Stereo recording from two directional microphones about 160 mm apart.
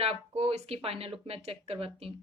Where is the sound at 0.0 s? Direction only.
40° right (ahead or behind).